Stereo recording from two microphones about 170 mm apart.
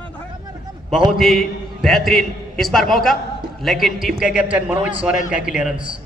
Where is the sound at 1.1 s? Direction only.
Centre (ahead or behind).